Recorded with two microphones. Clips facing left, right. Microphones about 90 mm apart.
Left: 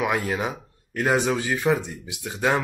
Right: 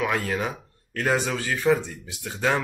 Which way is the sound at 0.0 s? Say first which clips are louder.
Left 1 dB; 15° left (ahead or behind).